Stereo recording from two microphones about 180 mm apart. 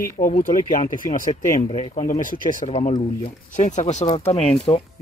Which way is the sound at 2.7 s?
35° left (ahead or behind).